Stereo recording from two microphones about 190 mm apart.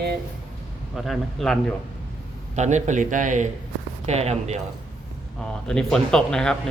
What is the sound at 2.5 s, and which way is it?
A man's voice, 40° right (ahead or behind).